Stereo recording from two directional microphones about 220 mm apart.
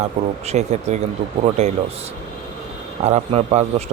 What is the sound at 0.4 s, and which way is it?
A man's voice, 30° right (ahead or behind).